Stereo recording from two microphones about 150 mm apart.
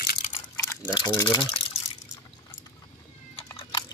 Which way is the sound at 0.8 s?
25° left (ahead or behind).